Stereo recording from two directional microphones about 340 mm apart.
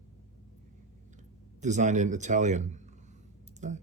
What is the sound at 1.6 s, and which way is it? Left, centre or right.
Speech, right.